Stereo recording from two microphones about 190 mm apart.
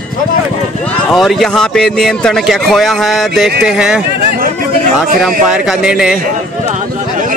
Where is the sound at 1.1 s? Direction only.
Centre (ahead or behind).